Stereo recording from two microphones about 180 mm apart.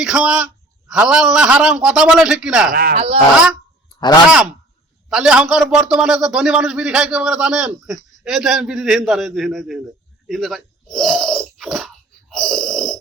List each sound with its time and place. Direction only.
0.0 s a man's voice: 5° right (ahead or behind)
2.9 s speech: 35° right (ahead or behind)
5.0 s a man's voice: 5° right (ahead or behind)
10.2 s a sound: centre (ahead or behind)
12.3 s snoring: centre (ahead or behind)